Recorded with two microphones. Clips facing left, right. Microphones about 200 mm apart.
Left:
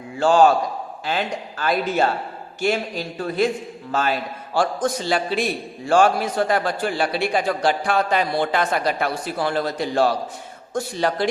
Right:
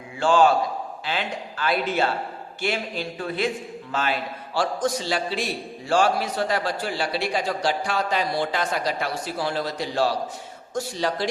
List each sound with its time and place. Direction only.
0.2 s a man's voice: 40° left (ahead or behind)